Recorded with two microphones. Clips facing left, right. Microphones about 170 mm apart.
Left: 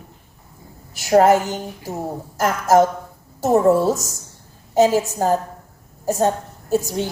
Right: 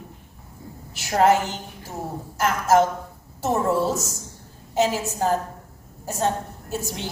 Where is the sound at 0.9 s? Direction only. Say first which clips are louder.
Left 5 dB; 40° left (ahead or behind).